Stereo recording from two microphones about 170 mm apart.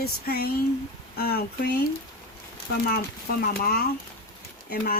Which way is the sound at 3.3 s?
60° left (ahead or behind).